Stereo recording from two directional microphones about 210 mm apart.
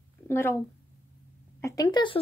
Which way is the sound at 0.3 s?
10° left (ahead or behind).